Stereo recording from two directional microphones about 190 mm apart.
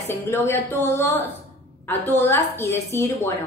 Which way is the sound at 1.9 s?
10° left (ahead or behind).